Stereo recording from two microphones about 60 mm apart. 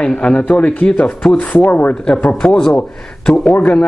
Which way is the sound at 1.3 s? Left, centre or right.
Left.